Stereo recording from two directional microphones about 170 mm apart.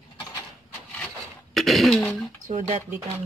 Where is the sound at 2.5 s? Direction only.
45° right (ahead or behind).